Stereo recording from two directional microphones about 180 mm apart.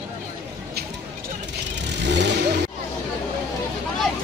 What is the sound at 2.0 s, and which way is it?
Vehicle, 70° right (ahead or behind).